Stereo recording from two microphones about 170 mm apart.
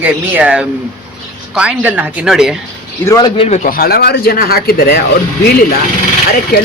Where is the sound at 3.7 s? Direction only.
65° left (ahead or behind).